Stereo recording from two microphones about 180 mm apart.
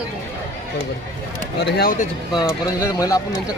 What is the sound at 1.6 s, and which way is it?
Speech, 65° left (ahead or behind).